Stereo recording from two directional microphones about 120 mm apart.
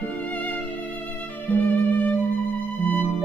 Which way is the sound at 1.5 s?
15° left (ahead or behind).